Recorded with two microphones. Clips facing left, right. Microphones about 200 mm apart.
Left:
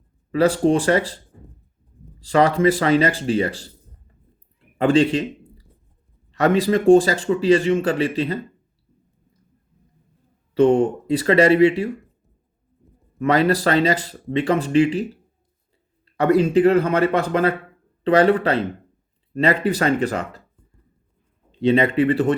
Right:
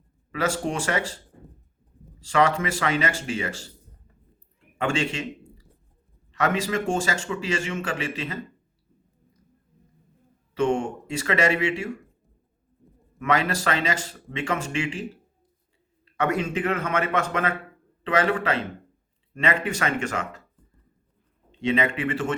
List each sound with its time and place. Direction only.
0.3 s speech: 35° left (ahead or behind)
2.2 s speech: 35° left (ahead or behind)
4.8 s a man's voice: 35° left (ahead or behind)
10.5 s speech: 35° left (ahead or behind)
13.1 s speech: 35° left (ahead or behind)
21.6 s speech: 35° left (ahead or behind)